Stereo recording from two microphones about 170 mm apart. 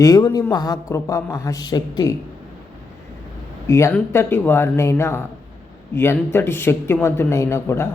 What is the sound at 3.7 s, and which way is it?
Speech, 15° left (ahead or behind).